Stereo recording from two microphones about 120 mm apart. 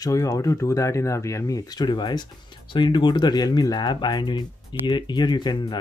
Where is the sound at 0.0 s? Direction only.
30° left (ahead or behind).